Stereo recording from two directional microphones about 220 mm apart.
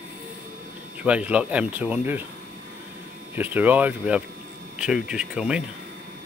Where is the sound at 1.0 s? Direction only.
5° right (ahead or behind).